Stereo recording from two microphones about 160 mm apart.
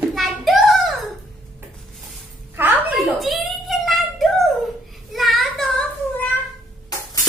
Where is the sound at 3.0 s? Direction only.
Centre (ahead or behind).